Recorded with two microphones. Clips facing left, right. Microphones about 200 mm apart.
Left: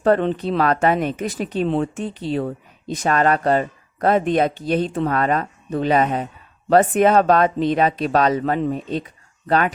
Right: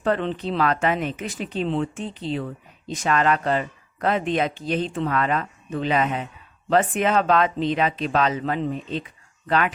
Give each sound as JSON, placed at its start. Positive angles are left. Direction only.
{"t": 0.0, "sound": "speech", "side_deg": 45}
{"t": 2.9, "sound": "speech", "side_deg": 40}